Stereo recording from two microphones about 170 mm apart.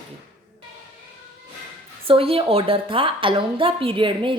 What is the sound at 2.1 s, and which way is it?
A woman's voice, 35° right (ahead or behind).